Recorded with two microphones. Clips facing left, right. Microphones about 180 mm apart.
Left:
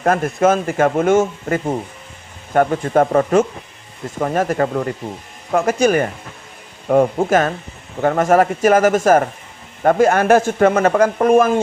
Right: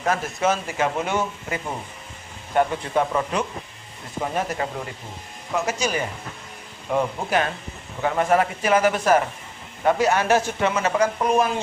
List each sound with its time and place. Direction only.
0.0 s speech: 55° left (ahead or behind)